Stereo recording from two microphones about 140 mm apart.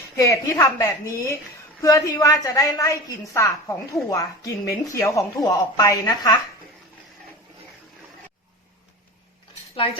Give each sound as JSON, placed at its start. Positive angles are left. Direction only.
{"t": 0.2, "sound": "a woman's voice", "side_deg": 20}